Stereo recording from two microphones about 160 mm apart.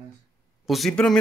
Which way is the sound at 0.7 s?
Centre (ahead or behind).